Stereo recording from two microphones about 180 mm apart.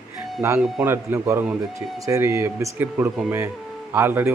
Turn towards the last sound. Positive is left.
turn(degrees=-15)  # may be behind; listen again after turning